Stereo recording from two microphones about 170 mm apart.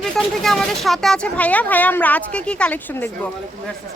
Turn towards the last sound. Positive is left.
turn(degrees=5)  # may be behind; listen again after turning